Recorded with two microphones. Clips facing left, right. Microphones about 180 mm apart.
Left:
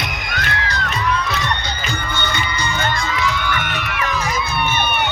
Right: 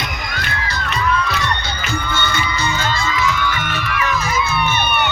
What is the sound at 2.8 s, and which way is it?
Crowd, 60° left (ahead or behind).